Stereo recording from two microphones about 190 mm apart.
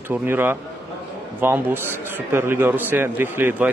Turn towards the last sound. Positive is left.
turn(degrees=-10)  # may be behind; listen again after turning